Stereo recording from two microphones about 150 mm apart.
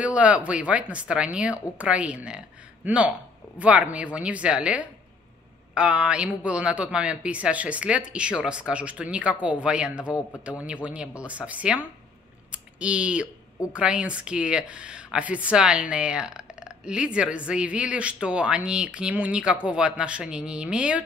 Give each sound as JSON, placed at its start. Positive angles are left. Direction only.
{"t": 0.0, "sound": "speech", "side_deg": -10}